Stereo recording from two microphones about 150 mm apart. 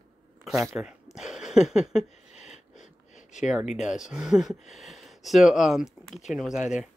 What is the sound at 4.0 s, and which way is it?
Speech, 5° right (ahead or behind).